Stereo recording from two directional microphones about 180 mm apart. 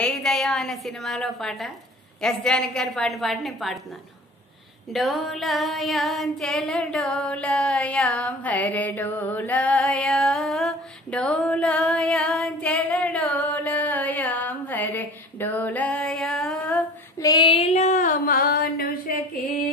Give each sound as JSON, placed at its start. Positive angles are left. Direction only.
{"t": 0.0, "sound": "a woman's voice", "side_deg": 5}
{"t": 4.9, "sound": "female singing", "side_deg": 0}
{"t": 17.2, "sound": "female singing", "side_deg": 25}